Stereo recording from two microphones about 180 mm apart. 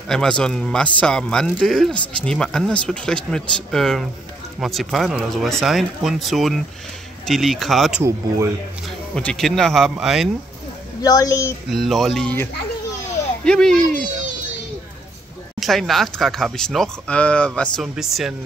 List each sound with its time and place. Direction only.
0.1 s speech: 5° left (ahead or behind)
11.0 s speech: 20° left (ahead or behind)
11.7 s speech: centre (ahead or behind)
15.6 s speech: centre (ahead or behind)